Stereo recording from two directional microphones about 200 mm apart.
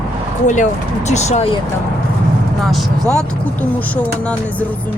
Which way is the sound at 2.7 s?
Centre (ahead or behind).